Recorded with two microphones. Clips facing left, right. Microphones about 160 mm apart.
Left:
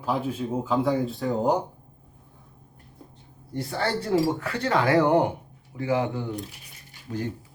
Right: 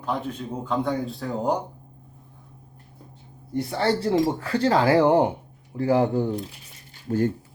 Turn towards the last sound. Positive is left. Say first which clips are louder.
# right 8 dB
turn(degrees=-40)  # may be behind; listen again after turning